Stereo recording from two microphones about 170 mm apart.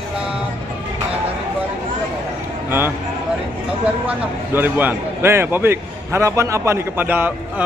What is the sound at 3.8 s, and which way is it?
A man's voice, 10° right (ahead or behind).